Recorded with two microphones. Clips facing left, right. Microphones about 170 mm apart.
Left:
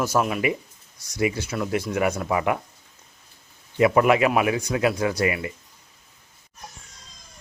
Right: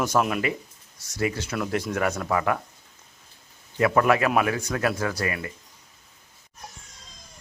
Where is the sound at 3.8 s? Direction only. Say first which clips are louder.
Left 3 dB; 15° left (ahead or behind).